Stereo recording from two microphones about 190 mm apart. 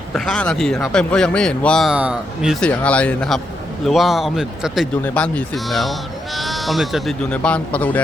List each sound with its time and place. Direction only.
0.1 s speech: 5° left (ahead or behind)